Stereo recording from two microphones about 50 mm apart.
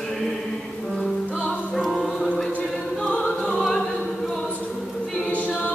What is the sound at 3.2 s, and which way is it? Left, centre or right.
Opera, centre.